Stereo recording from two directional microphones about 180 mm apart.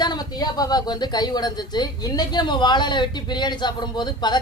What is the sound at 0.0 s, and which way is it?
A woman's voice, 25° left (ahead or behind).